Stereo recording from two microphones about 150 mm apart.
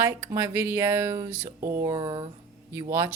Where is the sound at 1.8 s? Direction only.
30° right (ahead or behind).